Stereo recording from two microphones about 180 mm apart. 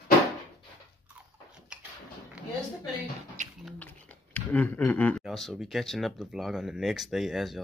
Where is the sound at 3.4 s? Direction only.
45° right (ahead or behind).